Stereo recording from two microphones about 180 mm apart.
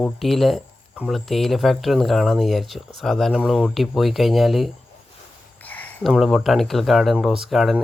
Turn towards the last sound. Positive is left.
turn(degrees=0)  # may be behind; listen again after turning